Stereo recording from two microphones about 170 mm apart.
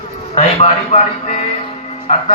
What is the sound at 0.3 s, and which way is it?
Speech, 40° left (ahead or behind).